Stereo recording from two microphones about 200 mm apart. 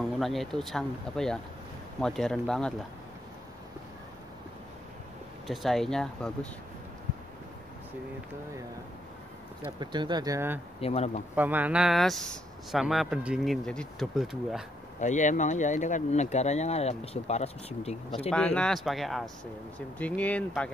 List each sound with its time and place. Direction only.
0.2 s speech: centre (ahead or behind)
5.5 s speech: centre (ahead or behind)
9.7 s speech: 20° right (ahead or behind)
10.8 s speech: 30° left (ahead or behind)
11.3 s speech: 10° right (ahead or behind)
15.0 s speech: 35° left (ahead or behind)
18.3 s speech: 5° left (ahead or behind)